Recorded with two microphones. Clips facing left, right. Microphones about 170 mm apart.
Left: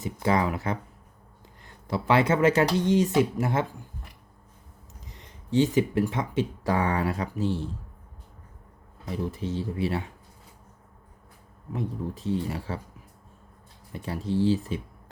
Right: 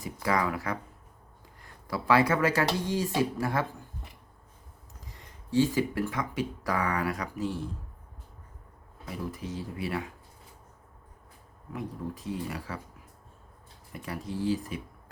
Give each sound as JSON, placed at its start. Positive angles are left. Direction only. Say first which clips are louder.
{"t": 0.0, "sound": "speech", "louder": "left 4 dB", "side_deg": 25}
{"t": 5.0, "sound": "speech", "louder": "left 4 dB", "side_deg": 20}
{"t": 9.0, "sound": "speech", "louder": "left 5 dB", "side_deg": 25}
{"t": 11.7, "sound": "speech", "louder": "left 4 dB", "side_deg": 25}
{"t": 13.9, "sound": "speech", "louder": "left 7 dB", "side_deg": 30}